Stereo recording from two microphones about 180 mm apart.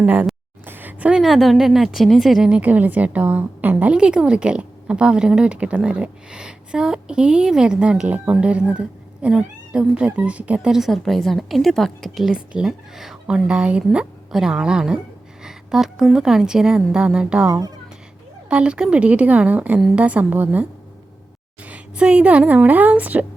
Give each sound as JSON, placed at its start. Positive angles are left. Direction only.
{"t": 0.0, "sound": "a woman's voice", "side_deg": -10}
{"t": 17.4, "sound": "a child's voice", "side_deg": -20}
{"t": 18.4, "sound": "a woman's voice", "side_deg": -5}